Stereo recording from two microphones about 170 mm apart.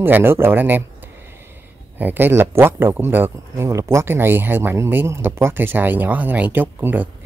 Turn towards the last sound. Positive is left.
turn(degrees=-10)  # may be behind; listen again after turning